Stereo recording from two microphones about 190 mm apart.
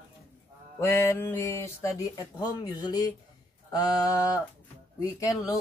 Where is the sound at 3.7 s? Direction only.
20° left (ahead or behind).